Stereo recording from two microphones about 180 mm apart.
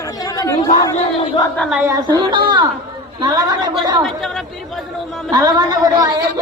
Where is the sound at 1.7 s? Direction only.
15° right (ahead or behind).